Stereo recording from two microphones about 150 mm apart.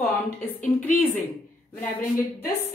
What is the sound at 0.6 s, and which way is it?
Speech, 10° left (ahead or behind).